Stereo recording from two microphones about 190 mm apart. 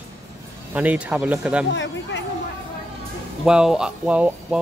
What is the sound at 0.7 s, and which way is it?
Speech, 5° right (ahead or behind).